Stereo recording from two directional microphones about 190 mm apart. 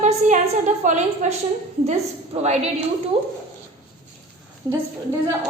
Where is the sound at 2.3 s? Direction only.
35° right (ahead or behind).